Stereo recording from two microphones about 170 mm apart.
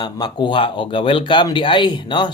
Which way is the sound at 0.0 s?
25° left (ahead or behind).